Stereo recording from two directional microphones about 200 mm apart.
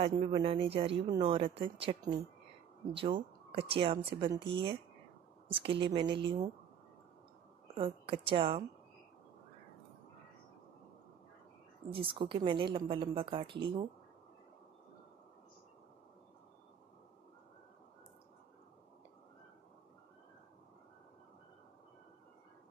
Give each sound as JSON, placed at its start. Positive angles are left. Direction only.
{"t": 0.0, "sound": "a woman's voice", "side_deg": -25}
{"t": 7.7, "sound": "speech", "side_deg": -25}
{"t": 11.9, "sound": "a woman's voice", "side_deg": -25}